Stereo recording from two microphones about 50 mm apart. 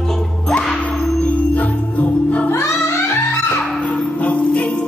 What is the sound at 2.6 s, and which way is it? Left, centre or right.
Music, left.